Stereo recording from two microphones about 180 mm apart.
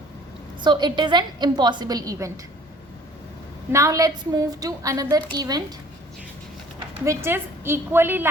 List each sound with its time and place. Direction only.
0.6 s a woman's voice: 25° right (ahead or behind)
3.7 s a woman's voice: 15° right (ahead or behind)
7.0 s a woman's voice: 15° right (ahead or behind)